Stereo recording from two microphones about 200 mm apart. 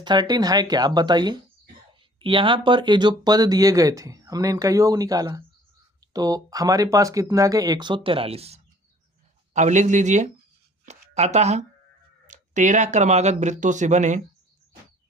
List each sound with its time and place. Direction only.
0.0 s speech: 20° right (ahead or behind); by 14.2 s 35° right (ahead or behind)